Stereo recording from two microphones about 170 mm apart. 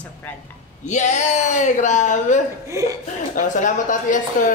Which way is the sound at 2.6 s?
20° right (ahead or behind).